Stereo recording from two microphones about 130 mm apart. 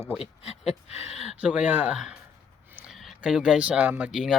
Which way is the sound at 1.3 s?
10° right (ahead or behind).